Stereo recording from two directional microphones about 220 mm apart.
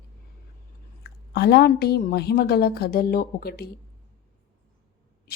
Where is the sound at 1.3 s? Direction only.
50° left (ahead or behind).